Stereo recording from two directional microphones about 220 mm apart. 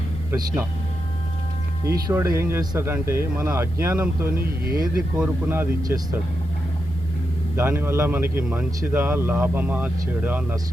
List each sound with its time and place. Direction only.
0.3 s a man's voice: 15° right (ahead or behind)
1.8 s a man's voice: 15° right (ahead or behind)
4.6 s speech: 40° right (ahead or behind)
5.1 s a man's voice: 10° right (ahead or behind)
7.5 s a man's voice: 10° right (ahead or behind)